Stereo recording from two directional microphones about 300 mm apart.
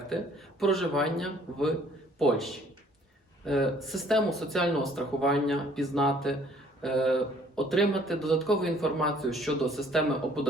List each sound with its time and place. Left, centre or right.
0.6 s speech: centre